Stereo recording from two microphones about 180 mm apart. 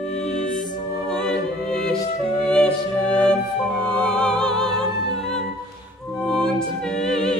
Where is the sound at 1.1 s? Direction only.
5° left (ahead or behind).